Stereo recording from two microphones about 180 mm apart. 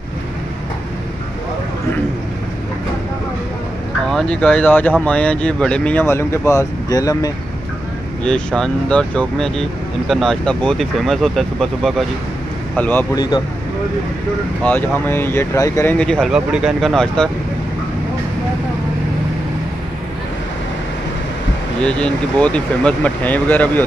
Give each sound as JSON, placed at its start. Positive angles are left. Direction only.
{"t": 4.1, "sound": "speech", "side_deg": 5}
{"t": 8.2, "sound": "speech", "side_deg": 5}
{"t": 13.1, "sound": "speech", "side_deg": 20}
{"t": 14.6, "sound": "speech", "side_deg": 10}
{"t": 21.8, "sound": "speech", "side_deg": 5}